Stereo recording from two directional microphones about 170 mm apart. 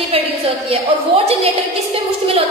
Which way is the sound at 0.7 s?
35° right (ahead or behind).